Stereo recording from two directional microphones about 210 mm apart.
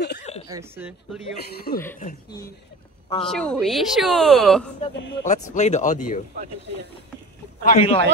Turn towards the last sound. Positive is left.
turn(degrees=40)  # may be behind; listen again after turning